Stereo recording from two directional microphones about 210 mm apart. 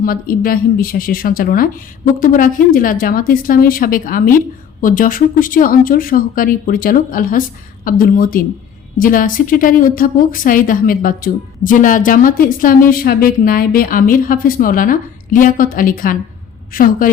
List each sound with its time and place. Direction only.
0.0 s a woman's voice: 45° left (ahead or behind)